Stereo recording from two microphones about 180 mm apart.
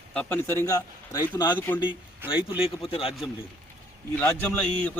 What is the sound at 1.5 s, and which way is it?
Speech, 10° left (ahead or behind).